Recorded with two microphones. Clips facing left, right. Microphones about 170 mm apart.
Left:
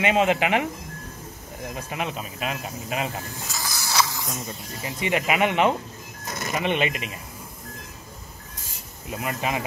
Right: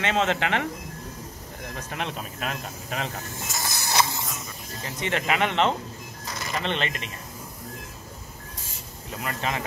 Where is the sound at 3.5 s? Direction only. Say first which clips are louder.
Right 1 dB; 20° right (ahead or behind).